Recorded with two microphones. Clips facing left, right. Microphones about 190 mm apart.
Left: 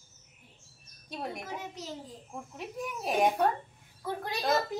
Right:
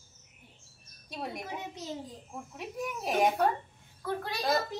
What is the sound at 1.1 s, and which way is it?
Speech, centre (ahead or behind).